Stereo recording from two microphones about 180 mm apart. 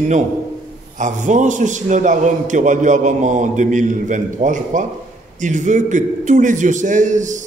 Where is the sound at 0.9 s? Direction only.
45° right (ahead or behind).